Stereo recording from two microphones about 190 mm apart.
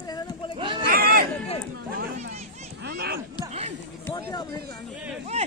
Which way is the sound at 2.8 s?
55° right (ahead or behind).